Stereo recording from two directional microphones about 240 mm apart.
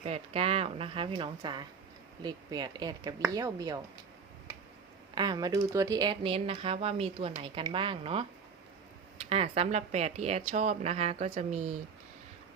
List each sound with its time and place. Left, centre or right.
0.0 s speech: right
5.1 s speech: centre
9.3 s speech: right